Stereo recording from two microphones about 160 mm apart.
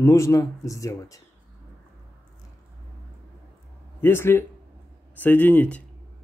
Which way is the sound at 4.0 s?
15° left (ahead or behind).